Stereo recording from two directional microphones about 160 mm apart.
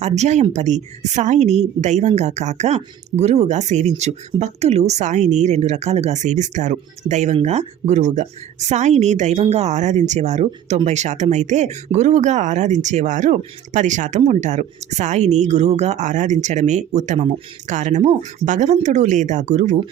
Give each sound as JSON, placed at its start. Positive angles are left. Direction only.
{"t": 0.0, "sound": "a woman's voice", "side_deg": -45}
{"t": 18.0, "sound": "speech", "side_deg": -35}
{"t": 18.4, "sound": "a woman's voice", "side_deg": -50}